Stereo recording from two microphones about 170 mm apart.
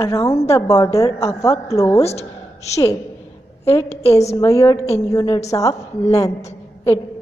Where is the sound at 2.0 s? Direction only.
40° left (ahead or behind).